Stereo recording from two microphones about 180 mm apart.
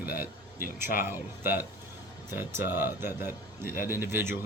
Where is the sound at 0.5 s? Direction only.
55° left (ahead or behind).